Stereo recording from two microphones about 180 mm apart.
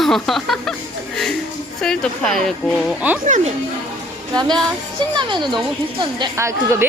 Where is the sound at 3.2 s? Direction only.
40° right (ahead or behind).